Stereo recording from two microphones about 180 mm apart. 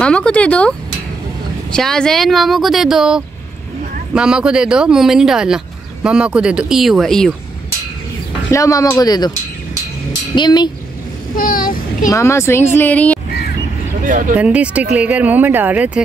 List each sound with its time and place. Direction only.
0.0 s speech: 5° left (ahead or behind)
8.5 s speech: 15° left (ahead or behind)
10.3 s speech: 25° left (ahead or behind)
11.3 s a child's voice: 50° left (ahead or behind)
12.1 s speech: 15° left (ahead or behind)
14.0 s speech: 45° right (ahead or behind)
14.3 s speech: 5° right (ahead or behind)